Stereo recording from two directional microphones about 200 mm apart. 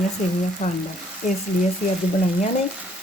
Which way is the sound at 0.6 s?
40° left (ahead or behind).